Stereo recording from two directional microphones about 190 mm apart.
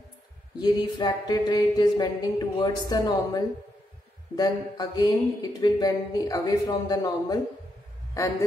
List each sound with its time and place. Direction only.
0.6 s speech: 20° left (ahead or behind)